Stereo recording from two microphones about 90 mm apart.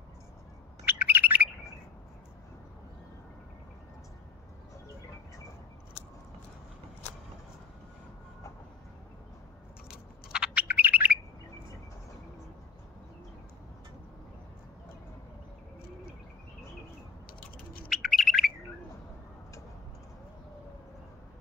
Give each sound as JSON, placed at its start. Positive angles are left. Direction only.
{"t": 0.8, "sound": "chirp", "side_deg": -20}
{"t": 9.8, "sound": "bird", "side_deg": -10}
{"t": 17.8, "sound": "bird", "side_deg": 0}